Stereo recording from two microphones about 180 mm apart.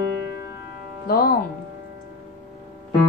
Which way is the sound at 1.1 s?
55° left (ahead or behind).